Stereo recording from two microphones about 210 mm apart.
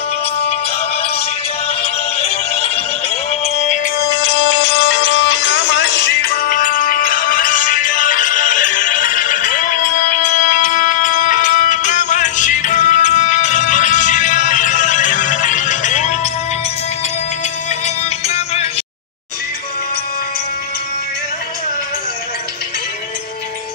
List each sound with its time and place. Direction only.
1.8 s music: 30° left (ahead or behind)
4.0 s music: 55° left (ahead or behind); by 16.2 s 35° left (ahead or behind)
17.8 s music: 30° left (ahead or behind)